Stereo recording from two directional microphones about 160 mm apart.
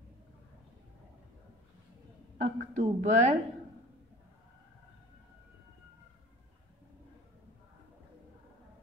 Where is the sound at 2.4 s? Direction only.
45° right (ahead or behind).